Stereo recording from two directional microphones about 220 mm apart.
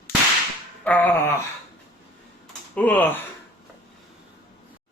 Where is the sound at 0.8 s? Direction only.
10° left (ahead or behind).